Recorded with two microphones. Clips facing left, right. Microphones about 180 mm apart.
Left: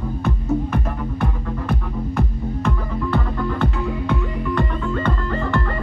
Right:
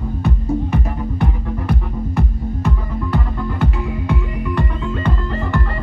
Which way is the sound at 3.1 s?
10° right (ahead or behind).